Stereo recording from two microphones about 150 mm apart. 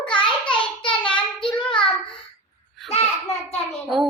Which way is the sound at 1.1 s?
35° left (ahead or behind).